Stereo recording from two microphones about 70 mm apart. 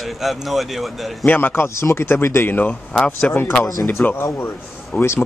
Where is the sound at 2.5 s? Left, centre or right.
Left.